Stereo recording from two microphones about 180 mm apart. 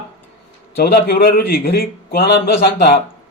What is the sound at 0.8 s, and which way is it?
A man's voice, 60° left (ahead or behind).